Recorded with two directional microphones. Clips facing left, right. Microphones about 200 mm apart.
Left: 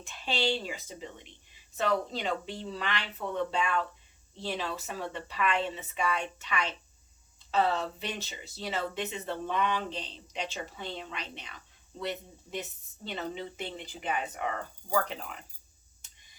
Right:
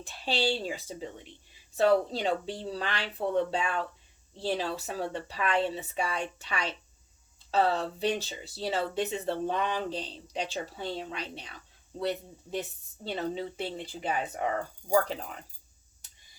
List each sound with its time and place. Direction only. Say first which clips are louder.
0.0 s speech: right 2 dB; 35° right (ahead or behind)
13.1 s speech: right 4 dB; 35° right (ahead or behind)